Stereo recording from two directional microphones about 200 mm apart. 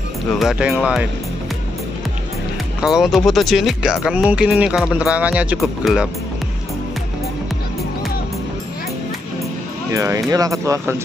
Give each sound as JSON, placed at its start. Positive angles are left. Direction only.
{"t": 0.3, "sound": "speech", "side_deg": 0}
{"t": 2.8, "sound": "speech", "side_deg": 0}
{"t": 9.9, "sound": "speech", "side_deg": -15}